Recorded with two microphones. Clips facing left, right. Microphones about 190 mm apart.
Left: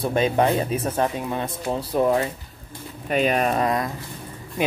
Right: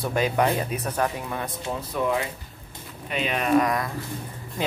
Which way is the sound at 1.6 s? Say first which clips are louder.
Left 6 dB; 35° left (ahead or behind).